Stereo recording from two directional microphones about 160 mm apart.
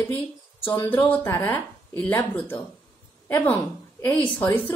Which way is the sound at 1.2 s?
15° left (ahead or behind).